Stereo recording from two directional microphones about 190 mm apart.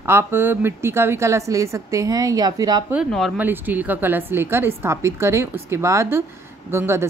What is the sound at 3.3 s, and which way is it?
A woman's voice, 10° right (ahead or behind).